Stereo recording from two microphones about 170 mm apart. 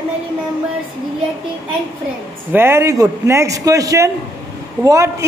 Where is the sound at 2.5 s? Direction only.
15° right (ahead or behind).